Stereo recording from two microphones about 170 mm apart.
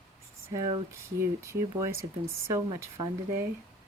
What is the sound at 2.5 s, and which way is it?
Speech, 25° right (ahead or behind).